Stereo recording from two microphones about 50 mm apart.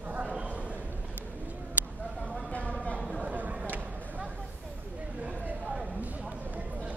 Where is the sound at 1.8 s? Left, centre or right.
Right.